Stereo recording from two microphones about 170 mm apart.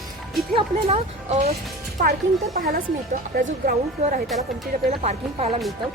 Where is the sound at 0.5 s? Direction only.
40° right (ahead or behind).